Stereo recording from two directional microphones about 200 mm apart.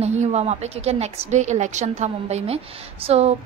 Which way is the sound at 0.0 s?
35° right (ahead or behind).